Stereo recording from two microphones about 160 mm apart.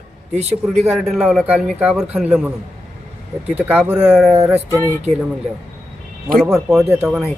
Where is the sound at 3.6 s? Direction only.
10° right (ahead or behind).